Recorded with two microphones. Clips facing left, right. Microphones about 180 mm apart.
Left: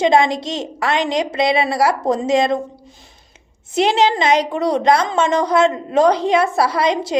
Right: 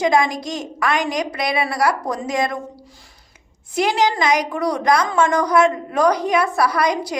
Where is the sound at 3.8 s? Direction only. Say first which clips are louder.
Left 3 dB; 25° left (ahead or behind).